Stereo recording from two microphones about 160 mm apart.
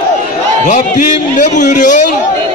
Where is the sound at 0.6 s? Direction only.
50° left (ahead or behind).